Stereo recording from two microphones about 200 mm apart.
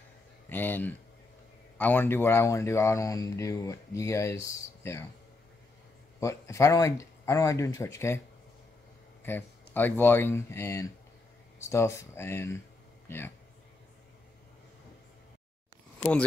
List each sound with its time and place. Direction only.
0.5 s speech: 10° left (ahead or behind)
6.1 s speech: 15° left (ahead or behind)
9.2 s speech: 10° left (ahead or behind)
16.0 s speech: 10° left (ahead or behind)